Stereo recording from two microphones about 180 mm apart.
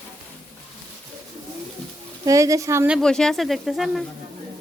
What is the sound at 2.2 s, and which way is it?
Speech, 15° right (ahead or behind).